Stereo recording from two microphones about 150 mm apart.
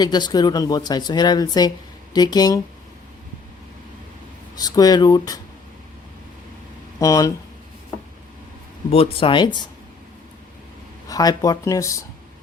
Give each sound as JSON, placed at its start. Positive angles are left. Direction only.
{"t": 0.0, "sound": "speech", "side_deg": 30}
{"t": 4.5, "sound": "speech", "side_deg": 25}
{"t": 7.0, "sound": "speech", "side_deg": 20}
{"t": 8.9, "sound": "speech", "side_deg": 40}
{"t": 11.1, "sound": "speech", "side_deg": 25}